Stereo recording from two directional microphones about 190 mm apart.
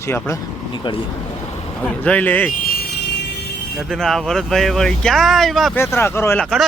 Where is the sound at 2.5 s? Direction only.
50° left (ahead or behind).